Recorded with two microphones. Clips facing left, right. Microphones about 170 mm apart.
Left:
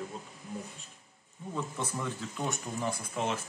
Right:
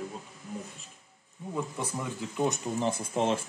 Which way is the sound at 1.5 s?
15° right (ahead or behind).